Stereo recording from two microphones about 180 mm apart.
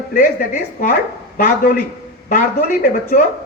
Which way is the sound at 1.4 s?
55° left (ahead or behind).